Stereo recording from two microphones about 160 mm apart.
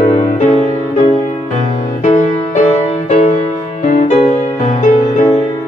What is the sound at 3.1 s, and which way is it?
Music, 50° left (ahead or behind).